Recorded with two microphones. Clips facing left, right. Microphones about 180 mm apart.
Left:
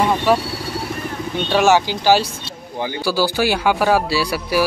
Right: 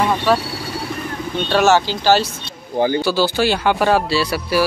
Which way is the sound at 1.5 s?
15° left (ahead or behind).